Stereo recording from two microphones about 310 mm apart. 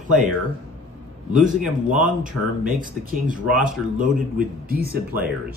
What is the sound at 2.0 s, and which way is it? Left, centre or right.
Speech, right.